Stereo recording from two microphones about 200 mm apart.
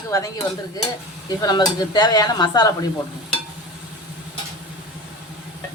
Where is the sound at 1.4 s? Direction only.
20° left (ahead or behind).